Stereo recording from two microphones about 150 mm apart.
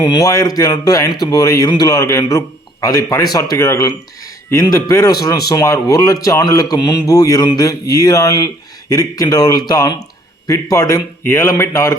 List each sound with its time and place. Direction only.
0.0 s a man's voice: 25° left (ahead or behind)